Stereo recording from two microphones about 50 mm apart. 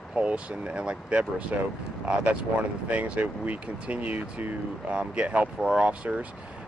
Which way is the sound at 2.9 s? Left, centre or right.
Right.